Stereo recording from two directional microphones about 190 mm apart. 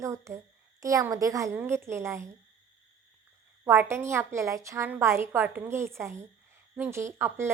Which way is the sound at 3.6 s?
15° right (ahead or behind).